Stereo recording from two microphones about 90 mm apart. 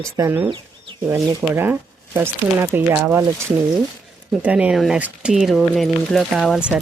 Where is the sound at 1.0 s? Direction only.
25° right (ahead or behind).